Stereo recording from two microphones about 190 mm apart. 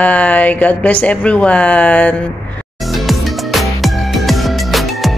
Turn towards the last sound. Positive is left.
turn(degrees=0)  # may be behind; listen again after turning